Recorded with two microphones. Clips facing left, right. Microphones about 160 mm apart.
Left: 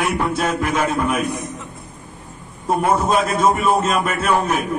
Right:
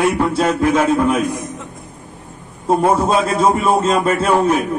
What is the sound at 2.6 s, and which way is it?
A man's voice, 30° right (ahead or behind).